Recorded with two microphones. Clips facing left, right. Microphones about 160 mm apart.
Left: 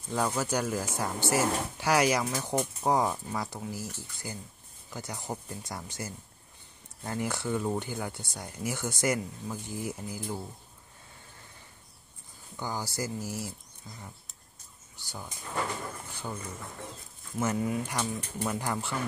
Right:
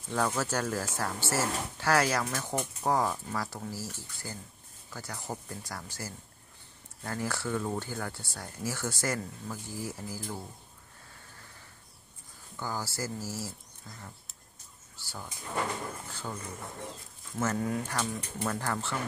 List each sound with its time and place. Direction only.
0.1 s speech: 10° left (ahead or behind)
12.5 s speech: 15° left (ahead or behind)
17.4 s speech: 10° left (ahead or behind)